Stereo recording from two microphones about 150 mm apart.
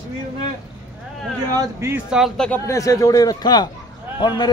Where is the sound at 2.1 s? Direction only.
Centre (ahead or behind).